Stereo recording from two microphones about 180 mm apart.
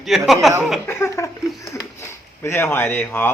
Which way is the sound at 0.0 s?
Centre (ahead or behind).